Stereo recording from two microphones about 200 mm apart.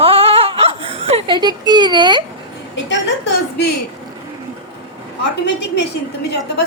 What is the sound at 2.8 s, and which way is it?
Speech, 65° left (ahead or behind).